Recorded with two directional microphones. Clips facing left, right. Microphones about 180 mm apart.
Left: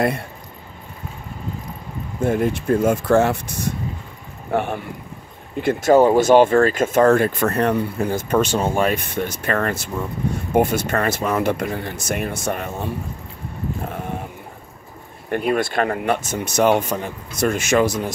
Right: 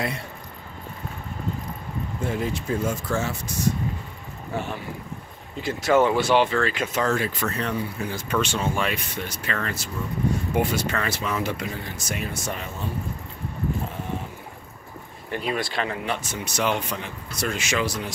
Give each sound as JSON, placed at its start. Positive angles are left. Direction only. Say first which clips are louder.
{"t": 2.2, "sound": "speech", "louder": "left 9 dB", "side_deg": 55}
{"t": 15.3, "sound": "speech", "louder": "left 7 dB", "side_deg": 55}